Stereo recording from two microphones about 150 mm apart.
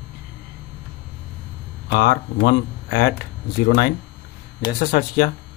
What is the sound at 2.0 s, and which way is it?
Speech, 90° left.